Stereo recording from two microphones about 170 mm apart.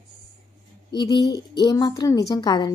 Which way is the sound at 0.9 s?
25° left (ahead or behind).